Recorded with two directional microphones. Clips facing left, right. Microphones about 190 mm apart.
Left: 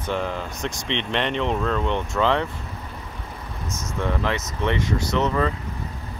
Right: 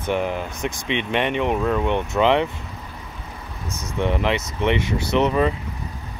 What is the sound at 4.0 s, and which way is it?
Speech, 20° right (ahead or behind).